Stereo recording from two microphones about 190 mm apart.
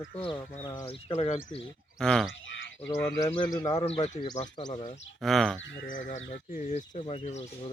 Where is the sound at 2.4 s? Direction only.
75° left (ahead or behind).